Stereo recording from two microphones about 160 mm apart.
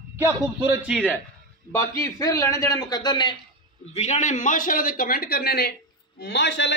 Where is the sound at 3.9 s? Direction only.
45° left (ahead or behind); by 5.7 s 75° left (ahead or behind).